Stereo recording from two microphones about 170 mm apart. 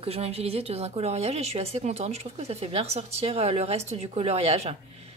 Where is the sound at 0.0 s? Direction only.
35° right (ahead or behind).